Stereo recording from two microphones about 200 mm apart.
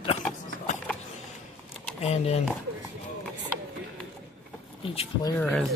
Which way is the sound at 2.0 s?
30° left (ahead or behind).